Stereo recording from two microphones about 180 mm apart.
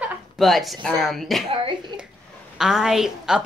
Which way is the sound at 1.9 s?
25° right (ahead or behind).